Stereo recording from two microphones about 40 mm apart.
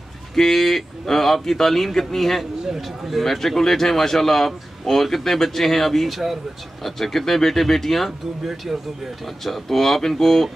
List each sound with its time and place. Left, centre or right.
0.4 s a man's voice: centre
9.4 s a man's voice: centre